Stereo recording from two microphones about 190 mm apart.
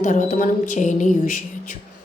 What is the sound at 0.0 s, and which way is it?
A woman's voice, 40° left (ahead or behind).